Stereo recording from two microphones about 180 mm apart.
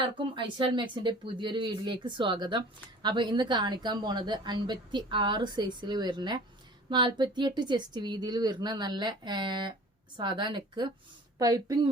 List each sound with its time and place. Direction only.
0.0 s speech: 25° right (ahead or behind)